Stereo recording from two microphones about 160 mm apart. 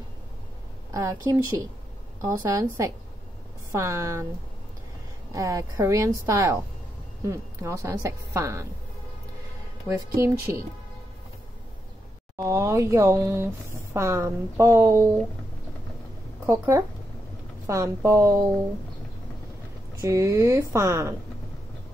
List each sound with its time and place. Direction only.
0.9 s a woman's voice: 20° right (ahead or behind)
5.3 s a woman's voice: 20° right (ahead or behind)
9.8 s a woman's voice: 20° right (ahead or behind)
12.4 s a woman's voice: 20° right (ahead or behind)
16.4 s a woman's voice: 15° right (ahead or behind)
20.0 s a woman's voice: 20° right (ahead or behind)